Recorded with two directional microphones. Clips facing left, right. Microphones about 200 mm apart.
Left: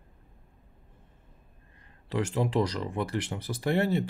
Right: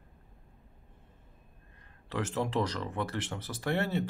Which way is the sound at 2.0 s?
15° left (ahead or behind).